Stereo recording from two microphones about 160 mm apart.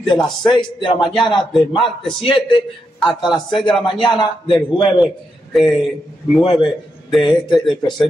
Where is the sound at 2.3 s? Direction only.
30° left (ahead or behind).